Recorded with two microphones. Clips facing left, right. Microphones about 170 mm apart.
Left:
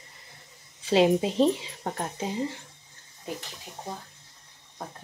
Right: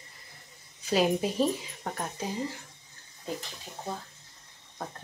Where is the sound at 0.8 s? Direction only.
25° left (ahead or behind).